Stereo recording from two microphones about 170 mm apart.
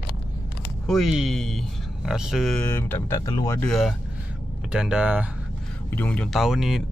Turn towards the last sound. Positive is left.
turn(degrees=0)  # may be behind; listen again after turning